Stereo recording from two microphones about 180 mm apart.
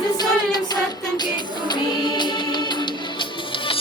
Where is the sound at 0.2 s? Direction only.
20° left (ahead or behind).